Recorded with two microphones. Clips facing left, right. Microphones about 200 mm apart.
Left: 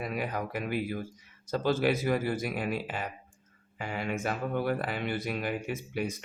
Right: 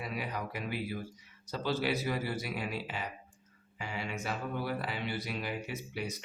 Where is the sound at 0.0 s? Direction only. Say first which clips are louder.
Left 5 dB; 50° left (ahead or behind).